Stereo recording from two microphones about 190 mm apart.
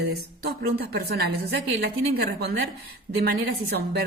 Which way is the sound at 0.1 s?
55° right (ahead or behind).